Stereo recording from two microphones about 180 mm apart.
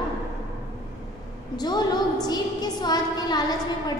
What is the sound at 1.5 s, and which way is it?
A woman's voice, 25° left (ahead or behind).